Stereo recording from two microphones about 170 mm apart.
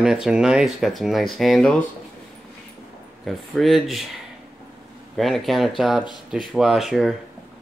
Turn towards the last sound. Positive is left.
turn(degrees=0)  # may be behind; listen again after turning